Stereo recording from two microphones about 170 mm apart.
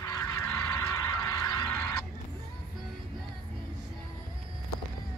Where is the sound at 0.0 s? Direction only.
20° left (ahead or behind).